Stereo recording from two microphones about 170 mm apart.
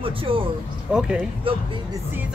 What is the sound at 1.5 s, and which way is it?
Speech, 30° right (ahead or behind).